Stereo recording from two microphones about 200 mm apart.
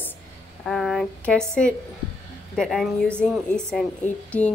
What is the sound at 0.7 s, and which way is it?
A woman's voice, centre (ahead or behind).